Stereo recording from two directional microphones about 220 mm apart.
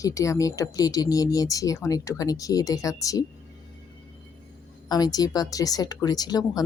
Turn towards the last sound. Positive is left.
turn(degrees=15)  # may be behind; listen again after turning